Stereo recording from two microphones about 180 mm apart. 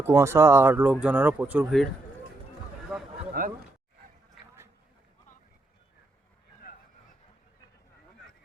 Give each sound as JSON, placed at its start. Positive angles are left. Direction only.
{"t": 0.0, "sound": "speech", "side_deg": -15}
{"t": 2.9, "sound": "a sound", "side_deg": -5}
{"t": 3.4, "sound": "speech", "side_deg": -50}